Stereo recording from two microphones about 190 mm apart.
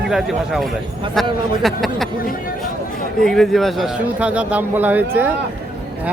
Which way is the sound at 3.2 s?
Centre (ahead or behind).